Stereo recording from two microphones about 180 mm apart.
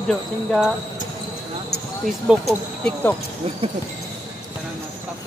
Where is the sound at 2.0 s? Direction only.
Centre (ahead or behind).